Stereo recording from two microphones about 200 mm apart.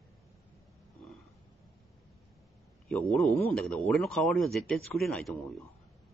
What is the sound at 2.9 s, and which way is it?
Speech, centre (ahead or behind).